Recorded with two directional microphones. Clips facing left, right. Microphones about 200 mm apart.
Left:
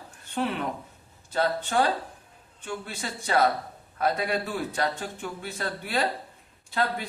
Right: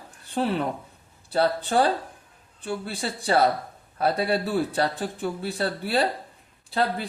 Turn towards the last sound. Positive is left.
turn(degrees=-30)  # may be behind; listen again after turning